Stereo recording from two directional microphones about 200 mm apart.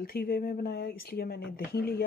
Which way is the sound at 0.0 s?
50° left (ahead or behind).